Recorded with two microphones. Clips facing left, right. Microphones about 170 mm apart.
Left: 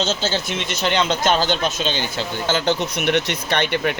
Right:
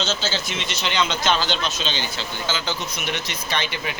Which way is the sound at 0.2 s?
55° left (ahead or behind).